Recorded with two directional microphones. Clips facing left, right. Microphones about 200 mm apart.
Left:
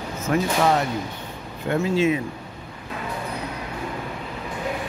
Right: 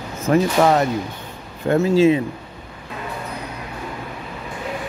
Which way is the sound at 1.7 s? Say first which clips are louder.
Right 6 dB; 35° right (ahead or behind).